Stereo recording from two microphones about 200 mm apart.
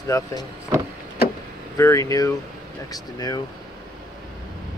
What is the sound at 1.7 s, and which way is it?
Speech, 15° left (ahead or behind).